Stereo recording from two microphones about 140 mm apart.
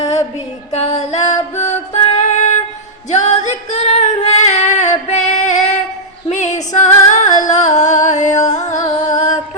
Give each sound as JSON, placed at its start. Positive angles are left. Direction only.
{"t": 0.7, "sound": "music", "side_deg": 50}
{"t": 3.1, "sound": "female singing", "side_deg": 55}
{"t": 6.2, "sound": "a sound", "side_deg": 55}
{"t": 6.7, "sound": "music", "side_deg": 60}
{"t": 8.8, "sound": "music", "side_deg": 25}
{"t": 9.1, "sound": "music", "side_deg": 60}